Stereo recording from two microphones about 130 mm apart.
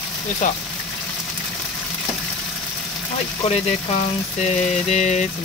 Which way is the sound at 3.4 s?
55° left (ahead or behind).